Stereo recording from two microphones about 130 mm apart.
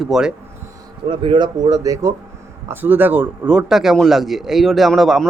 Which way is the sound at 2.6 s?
15° right (ahead or behind).